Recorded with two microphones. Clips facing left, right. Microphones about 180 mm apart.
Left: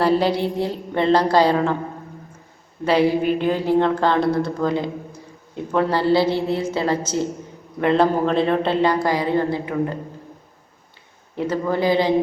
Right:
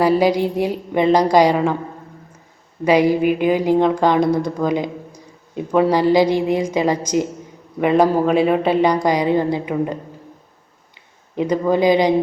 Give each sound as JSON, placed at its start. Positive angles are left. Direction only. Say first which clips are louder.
{"t": 0.0, "sound": "a woman's voice", "louder": "right 3 dB", "side_deg": -10}
{"t": 2.8, "sound": "a woman's voice", "louder": "right 3 dB", "side_deg": -10}
{"t": 11.3, "sound": "a woman's voice", "louder": "right 4 dB", "side_deg": -15}